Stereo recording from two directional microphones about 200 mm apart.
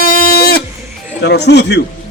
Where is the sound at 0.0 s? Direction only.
45° left (ahead or behind).